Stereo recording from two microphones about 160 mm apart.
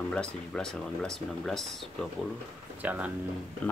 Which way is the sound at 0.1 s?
5° left (ahead or behind).